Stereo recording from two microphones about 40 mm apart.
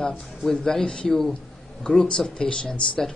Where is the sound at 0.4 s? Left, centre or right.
Centre.